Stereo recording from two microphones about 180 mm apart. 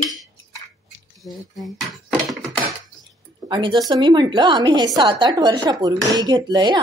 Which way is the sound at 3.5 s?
25° right (ahead or behind).